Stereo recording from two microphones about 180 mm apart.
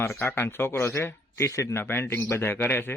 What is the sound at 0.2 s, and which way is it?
Speech, 10° left (ahead or behind).